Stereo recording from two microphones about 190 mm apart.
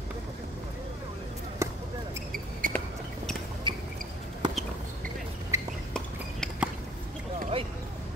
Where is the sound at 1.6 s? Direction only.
15° right (ahead or behind).